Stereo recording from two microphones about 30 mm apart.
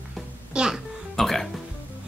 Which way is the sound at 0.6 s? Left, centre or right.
Right.